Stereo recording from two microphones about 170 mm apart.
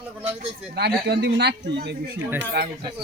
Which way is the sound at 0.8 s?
80° right.